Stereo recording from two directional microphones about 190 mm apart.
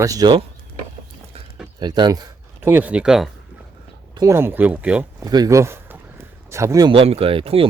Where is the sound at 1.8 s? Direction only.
20° right (ahead or behind).